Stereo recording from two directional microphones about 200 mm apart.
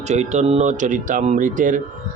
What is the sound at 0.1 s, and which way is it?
Speech, 35° right (ahead or behind).